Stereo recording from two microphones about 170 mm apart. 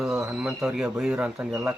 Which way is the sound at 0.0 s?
Centre (ahead or behind).